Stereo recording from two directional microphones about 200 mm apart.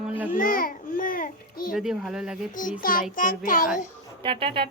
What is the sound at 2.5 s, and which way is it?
A child's voice, 40° left (ahead or behind).